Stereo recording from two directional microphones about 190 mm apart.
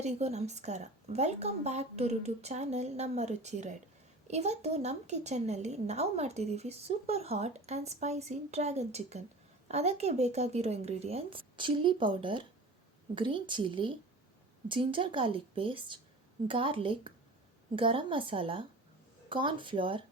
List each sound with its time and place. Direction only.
0.0 s a woman's voice: 35° right (ahead or behind)